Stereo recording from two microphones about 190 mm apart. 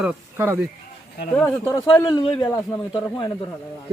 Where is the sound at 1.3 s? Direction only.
10° left (ahead or behind).